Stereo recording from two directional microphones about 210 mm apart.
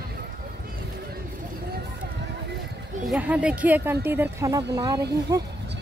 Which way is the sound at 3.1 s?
5° right (ahead or behind).